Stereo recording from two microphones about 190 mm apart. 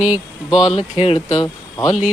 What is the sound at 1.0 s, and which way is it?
Speech, 30° left (ahead or behind).